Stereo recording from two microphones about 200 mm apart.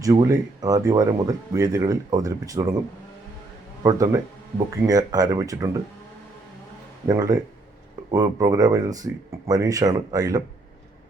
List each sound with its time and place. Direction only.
0.0 s speech: 15° right (ahead or behind)
3.8 s speech: 15° right (ahead or behind)
7.1 s speech: 15° right (ahead or behind)